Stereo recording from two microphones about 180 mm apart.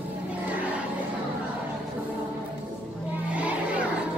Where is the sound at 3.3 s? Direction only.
5° right (ahead or behind).